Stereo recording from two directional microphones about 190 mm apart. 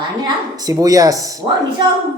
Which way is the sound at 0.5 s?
20° right (ahead or behind).